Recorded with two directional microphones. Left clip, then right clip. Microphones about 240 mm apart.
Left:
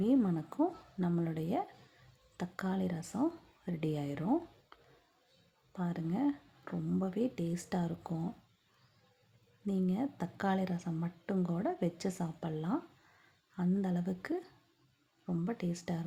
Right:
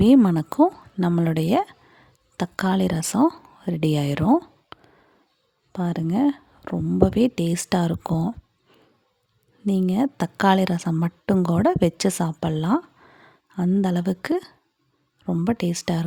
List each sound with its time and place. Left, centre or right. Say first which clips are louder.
0.0 s a woman's voice: right 15 dB; right
9.6 s a woman's voice: right 13 dB; right